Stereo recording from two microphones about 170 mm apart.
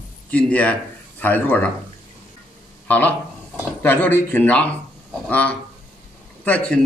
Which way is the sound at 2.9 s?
10° left (ahead or behind).